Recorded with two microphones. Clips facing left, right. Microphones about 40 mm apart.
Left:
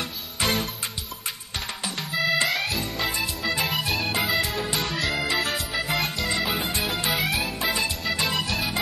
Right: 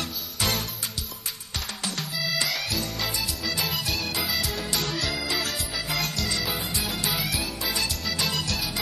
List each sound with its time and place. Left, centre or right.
0.4 s music: left
2.1 s music: left
2.6 s music: left
3.1 s music: left